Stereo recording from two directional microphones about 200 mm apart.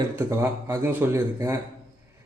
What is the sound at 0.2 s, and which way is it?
A man's voice, 15° right (ahead or behind).